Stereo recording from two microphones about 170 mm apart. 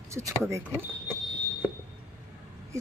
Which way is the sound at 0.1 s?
15° right (ahead or behind).